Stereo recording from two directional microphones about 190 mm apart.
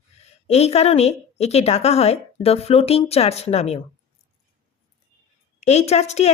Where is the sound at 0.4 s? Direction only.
35° left (ahead or behind).